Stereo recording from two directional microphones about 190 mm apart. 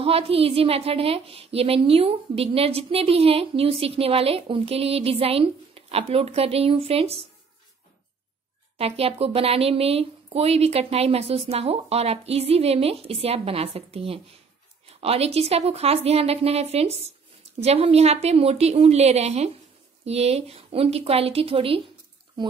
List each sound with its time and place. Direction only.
0.0 s a woman's voice: 30° right (ahead or behind)
8.7 s a woman's voice: 30° right (ahead or behind)